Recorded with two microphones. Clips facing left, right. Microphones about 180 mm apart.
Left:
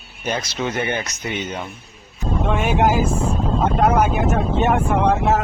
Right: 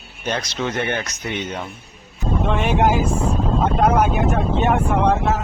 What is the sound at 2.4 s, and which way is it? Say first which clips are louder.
Speech: even; 5° left (ahead or behind).